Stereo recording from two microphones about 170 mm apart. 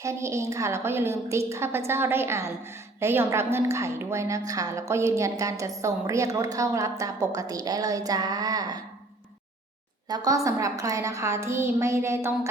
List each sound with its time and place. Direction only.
0.0 s a woman's voice: 15° right (ahead or behind)
10.1 s a woman's voice: 20° right (ahead or behind)